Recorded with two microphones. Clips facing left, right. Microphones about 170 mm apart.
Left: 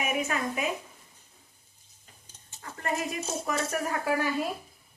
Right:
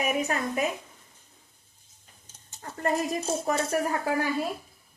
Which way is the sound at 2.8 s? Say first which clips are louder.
Right 5 dB; 35° right (ahead or behind).